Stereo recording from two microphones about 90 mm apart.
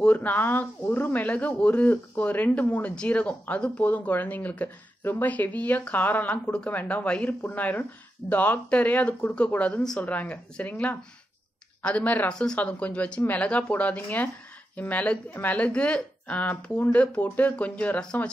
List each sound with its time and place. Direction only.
0.0 s speech: 15° left (ahead or behind)